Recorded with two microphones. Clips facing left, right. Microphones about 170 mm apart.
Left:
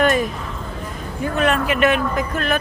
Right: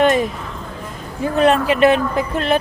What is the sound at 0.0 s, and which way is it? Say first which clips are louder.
A woman's voice: right 3 dB; 25° right (ahead or behind).